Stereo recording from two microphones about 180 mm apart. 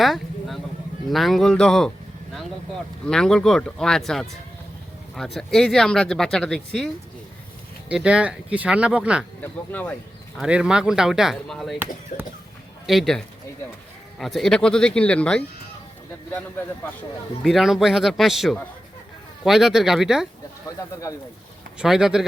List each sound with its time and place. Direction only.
0.0 s a sound: centre (ahead or behind)
1.1 s speech: centre (ahead or behind)
3.1 s speech: 5° left (ahead or behind)
7.9 s speech: 5° right (ahead or behind)
9.4 s speech: 10° left (ahead or behind)
10.3 s speech: 5° right (ahead or behind)
12.1 s speech: 45° left (ahead or behind)
12.8 s speech: centre (ahead or behind)
17.4 s speech: centre (ahead or behind)
20.7 s speech: 20° left (ahead or behind)
21.8 s speech: centre (ahead or behind)